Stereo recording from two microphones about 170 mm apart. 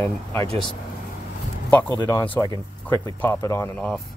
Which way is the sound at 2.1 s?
15° left (ahead or behind).